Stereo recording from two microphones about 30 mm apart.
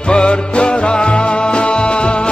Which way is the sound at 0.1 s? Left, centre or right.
Left.